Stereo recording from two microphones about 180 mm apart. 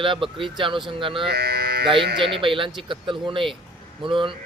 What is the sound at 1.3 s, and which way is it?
Speech, 65° right (ahead or behind).